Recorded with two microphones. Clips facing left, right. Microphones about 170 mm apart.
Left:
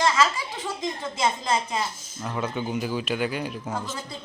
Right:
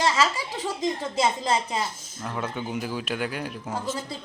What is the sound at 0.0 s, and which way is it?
A woman's voice, 35° right (ahead or behind).